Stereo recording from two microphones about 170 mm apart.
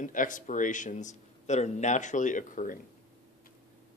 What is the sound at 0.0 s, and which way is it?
A man's voice, 50° left (ahead or behind).